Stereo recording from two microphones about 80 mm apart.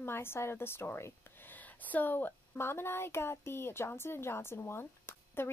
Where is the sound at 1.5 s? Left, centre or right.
Left.